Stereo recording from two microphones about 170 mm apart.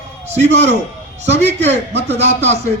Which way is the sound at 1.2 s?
40° right (ahead or behind).